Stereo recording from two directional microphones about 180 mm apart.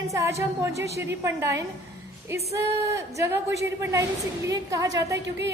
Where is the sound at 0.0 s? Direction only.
15° right (ahead or behind).